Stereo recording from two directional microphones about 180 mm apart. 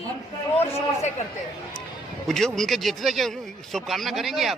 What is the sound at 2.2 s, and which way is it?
A man's voice, centre (ahead or behind).